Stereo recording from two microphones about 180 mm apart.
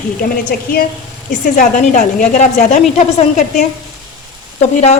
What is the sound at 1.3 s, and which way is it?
A woman's voice, 45° left (ahead or behind).